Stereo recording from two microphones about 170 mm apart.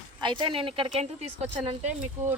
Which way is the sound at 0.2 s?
30° right (ahead or behind).